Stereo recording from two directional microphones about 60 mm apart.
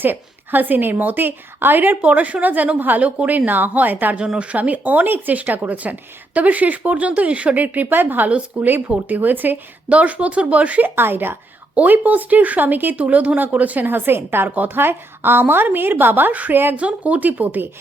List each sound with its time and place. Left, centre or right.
0.0 s a woman's voice: right
2.0 s a woman's voice: right
11.7 s a woman's voice: right
16.7 s speech: right